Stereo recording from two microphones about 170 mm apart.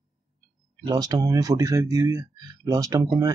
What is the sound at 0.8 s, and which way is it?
Speech, 25° right (ahead or behind).